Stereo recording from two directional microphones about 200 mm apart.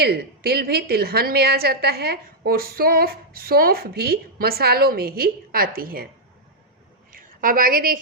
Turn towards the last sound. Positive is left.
turn(degrees=-45)  # may be behind; listen again after turning